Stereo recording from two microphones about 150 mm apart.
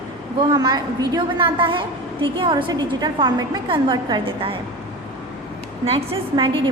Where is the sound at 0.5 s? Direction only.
25° right (ahead or behind).